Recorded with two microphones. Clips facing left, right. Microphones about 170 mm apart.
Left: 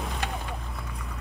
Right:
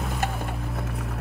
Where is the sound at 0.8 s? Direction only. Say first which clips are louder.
Right 7 dB; 85° right.